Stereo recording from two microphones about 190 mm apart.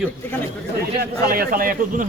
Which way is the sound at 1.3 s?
50° right (ahead or behind).